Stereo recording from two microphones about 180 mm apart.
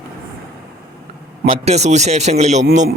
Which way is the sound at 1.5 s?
35° right (ahead or behind).